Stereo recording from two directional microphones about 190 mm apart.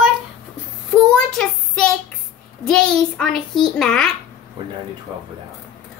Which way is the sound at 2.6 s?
5° left (ahead or behind).